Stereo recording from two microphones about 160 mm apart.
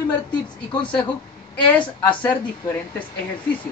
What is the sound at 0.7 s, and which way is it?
Speech, 30° left (ahead or behind).